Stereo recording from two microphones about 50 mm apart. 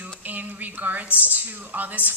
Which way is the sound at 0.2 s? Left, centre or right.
Right.